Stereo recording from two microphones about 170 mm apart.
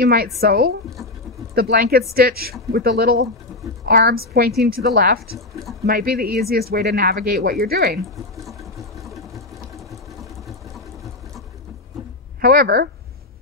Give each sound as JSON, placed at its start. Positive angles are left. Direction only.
{"t": 0.0, "sound": "speech", "side_deg": -65}
{"t": 8.5, "sound": "a sound", "side_deg": 0}
{"t": 12.4, "sound": "speech", "side_deg": -60}